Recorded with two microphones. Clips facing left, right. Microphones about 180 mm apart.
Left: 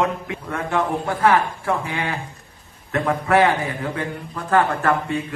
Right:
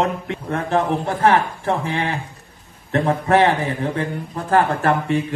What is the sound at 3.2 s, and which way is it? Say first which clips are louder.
A man's voice: even; 35° right (ahead or behind).